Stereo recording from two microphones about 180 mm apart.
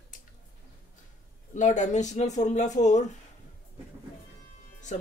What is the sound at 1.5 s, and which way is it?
Speech, 45° left (ahead or behind).